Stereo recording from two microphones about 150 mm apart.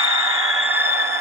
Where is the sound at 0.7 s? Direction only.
15° right (ahead or behind).